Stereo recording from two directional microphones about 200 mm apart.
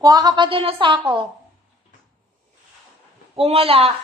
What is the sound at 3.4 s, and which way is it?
Speech, 30° right (ahead or behind).